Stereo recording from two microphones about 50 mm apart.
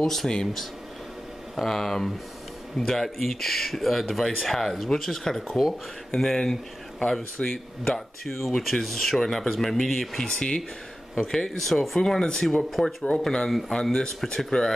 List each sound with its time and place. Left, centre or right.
0.0 s speech: centre
1.5 s speech: centre
5.5 s speech: centre
6.1 s speech: centre
12.0 s speech: centre